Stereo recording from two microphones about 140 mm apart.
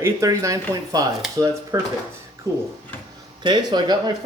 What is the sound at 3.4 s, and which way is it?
Speech, 30° right (ahead or behind).